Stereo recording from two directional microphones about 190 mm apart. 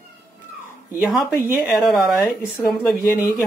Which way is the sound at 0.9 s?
5° right (ahead or behind).